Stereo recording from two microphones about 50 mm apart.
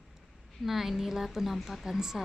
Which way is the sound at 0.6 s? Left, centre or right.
Centre.